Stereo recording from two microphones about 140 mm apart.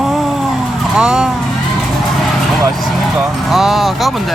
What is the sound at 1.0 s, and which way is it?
Vehicle, 5° right (ahead or behind).